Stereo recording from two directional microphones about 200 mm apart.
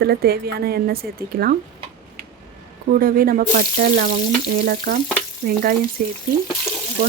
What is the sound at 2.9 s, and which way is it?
Speech, 45° right (ahead or behind).